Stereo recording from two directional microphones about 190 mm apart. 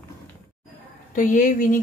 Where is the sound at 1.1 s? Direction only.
45° left (ahead or behind).